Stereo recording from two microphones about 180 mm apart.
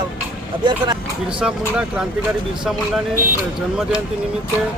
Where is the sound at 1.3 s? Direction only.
5° right (ahead or behind).